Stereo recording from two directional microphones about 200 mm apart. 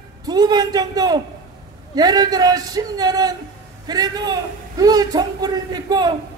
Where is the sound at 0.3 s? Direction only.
20° right (ahead or behind).